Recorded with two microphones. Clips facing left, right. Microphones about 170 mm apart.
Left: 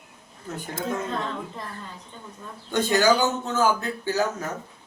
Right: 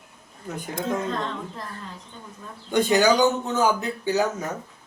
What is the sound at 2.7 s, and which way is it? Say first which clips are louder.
Speech: right 2 dB; 15° right (ahead or behind).